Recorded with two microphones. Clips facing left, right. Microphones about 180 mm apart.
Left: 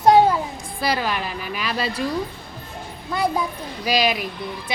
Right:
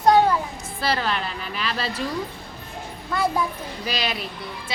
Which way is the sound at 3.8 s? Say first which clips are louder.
Left 7 dB; 10° left (ahead or behind).